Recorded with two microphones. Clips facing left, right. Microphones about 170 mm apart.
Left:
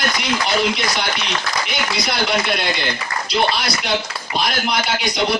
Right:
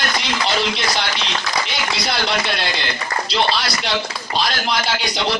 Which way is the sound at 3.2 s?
30° right (ahead or behind).